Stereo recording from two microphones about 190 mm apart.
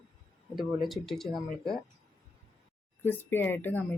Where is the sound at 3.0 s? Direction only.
10° left (ahead or behind).